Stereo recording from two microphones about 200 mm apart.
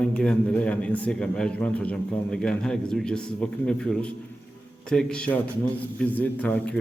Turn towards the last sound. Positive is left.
turn(degrees=5)  # may be behind; listen again after turning